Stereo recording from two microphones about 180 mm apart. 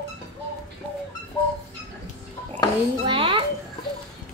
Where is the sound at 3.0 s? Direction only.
30° right (ahead or behind).